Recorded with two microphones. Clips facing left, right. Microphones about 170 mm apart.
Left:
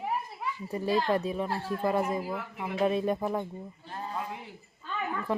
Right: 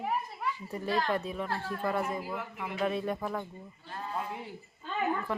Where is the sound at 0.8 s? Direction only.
15° left (ahead or behind).